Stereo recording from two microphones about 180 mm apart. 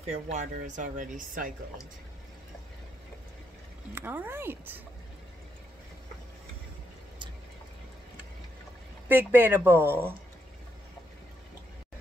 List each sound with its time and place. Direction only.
0.0 s speech: 40° right (ahead or behind)
3.9 s speech: 10° right (ahead or behind)
9.1 s speech: 10° right (ahead or behind)